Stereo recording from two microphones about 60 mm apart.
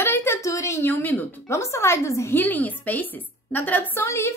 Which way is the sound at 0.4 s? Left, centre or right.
Left.